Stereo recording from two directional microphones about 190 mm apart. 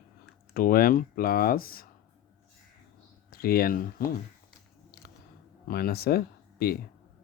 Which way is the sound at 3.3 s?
50° left (ahead or behind).